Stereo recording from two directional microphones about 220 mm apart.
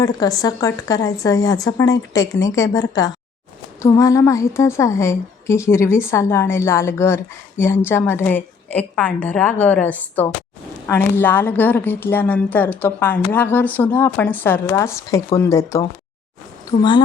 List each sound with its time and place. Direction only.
0.0 s a woman's voice: 15° left (ahead or behind)